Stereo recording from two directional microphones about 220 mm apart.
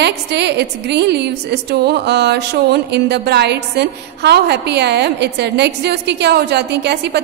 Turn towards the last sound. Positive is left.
turn(degrees=-50)  # may be behind; listen again after turning